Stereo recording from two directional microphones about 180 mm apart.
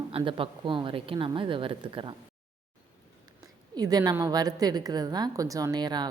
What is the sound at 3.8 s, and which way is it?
Speech, 20° right (ahead or behind).